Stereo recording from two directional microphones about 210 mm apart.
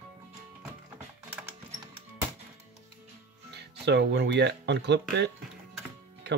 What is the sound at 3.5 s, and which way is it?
Speech, 55° right (ahead or behind).